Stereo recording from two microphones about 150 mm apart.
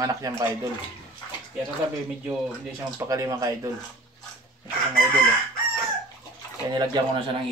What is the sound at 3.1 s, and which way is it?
Speech, 20° right (ahead or behind).